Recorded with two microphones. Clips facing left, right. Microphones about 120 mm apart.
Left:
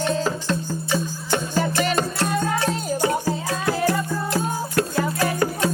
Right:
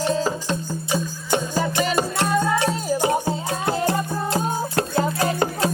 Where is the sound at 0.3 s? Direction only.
15° right (ahead or behind).